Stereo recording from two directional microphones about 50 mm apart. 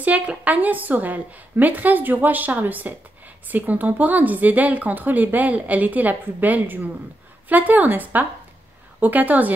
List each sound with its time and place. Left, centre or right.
0.4 s speech: right